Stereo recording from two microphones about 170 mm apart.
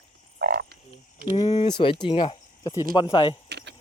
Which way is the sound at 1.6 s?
30° left (ahead or behind).